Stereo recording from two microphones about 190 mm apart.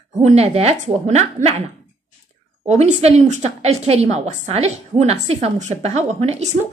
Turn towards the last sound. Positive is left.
turn(degrees=-35)  # may be behind; listen again after turning